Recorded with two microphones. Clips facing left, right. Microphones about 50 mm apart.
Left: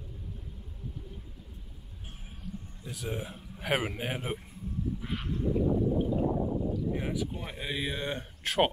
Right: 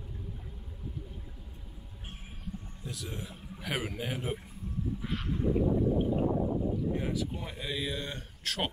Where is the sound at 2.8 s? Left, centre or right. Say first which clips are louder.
Left 5 dB; centre.